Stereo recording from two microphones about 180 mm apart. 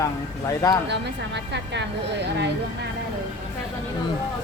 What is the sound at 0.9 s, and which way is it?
A woman's voice, 70° right (ahead or behind).